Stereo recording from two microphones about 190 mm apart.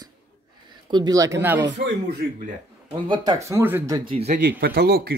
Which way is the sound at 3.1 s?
20° right (ahead or behind).